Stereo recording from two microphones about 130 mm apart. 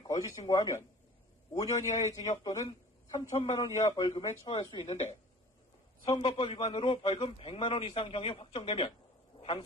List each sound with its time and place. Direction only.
0.0 s speech: 30° left (ahead or behind)
4.5 s speech: 40° left (ahead or behind)
6.1 s a man's voice: 40° left (ahead or behind)
9.3 s a sound: 45° left (ahead or behind)